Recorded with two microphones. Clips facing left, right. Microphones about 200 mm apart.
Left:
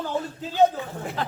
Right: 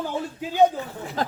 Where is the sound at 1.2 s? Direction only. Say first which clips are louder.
Right 3 dB; 40° right (ahead or behind).